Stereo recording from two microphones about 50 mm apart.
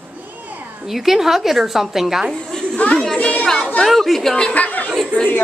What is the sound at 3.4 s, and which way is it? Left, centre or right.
Speech, centre.